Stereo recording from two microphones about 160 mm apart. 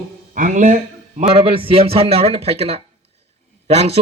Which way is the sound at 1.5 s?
35° right (ahead or behind).